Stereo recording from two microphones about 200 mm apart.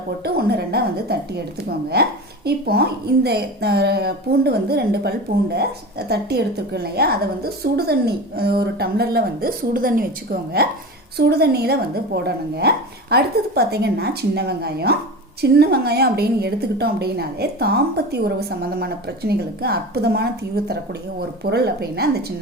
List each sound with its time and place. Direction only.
0.3 s a woman's voice: 50° right (ahead or behind)